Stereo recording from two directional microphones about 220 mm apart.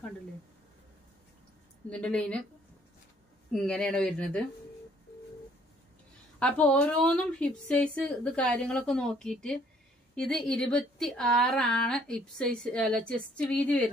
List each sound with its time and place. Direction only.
1.9 s a woman's voice: 5° left (ahead or behind)
3.5 s a woman's voice: 5° left (ahead or behind)
6.4 s a woman's voice: 5° left (ahead or behind)